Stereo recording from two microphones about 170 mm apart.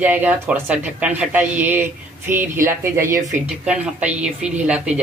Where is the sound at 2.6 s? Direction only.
15° right (ahead or behind).